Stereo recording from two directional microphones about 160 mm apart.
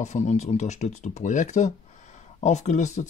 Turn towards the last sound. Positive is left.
turn(degrees=50)  # may be behind; listen again after turning